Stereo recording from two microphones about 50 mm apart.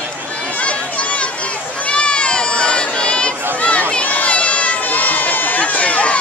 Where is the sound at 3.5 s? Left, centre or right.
Left.